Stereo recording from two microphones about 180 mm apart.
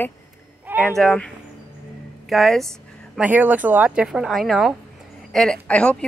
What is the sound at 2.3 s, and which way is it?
Speech, centre (ahead or behind).